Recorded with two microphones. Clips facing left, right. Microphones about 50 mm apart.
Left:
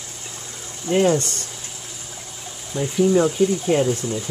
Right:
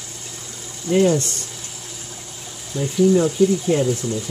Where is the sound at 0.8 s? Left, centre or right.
Left.